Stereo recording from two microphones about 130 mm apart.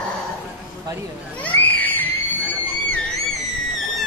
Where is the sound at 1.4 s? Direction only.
15° left (ahead or behind).